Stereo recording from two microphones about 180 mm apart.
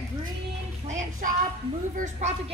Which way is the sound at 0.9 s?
45° right (ahead or behind).